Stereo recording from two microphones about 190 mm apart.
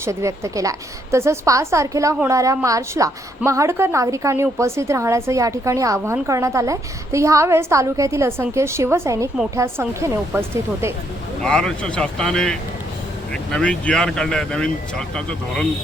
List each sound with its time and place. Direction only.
0.0 s a woman's voice: 15° right (ahead or behind)
11.4 s speech: 5° left (ahead or behind)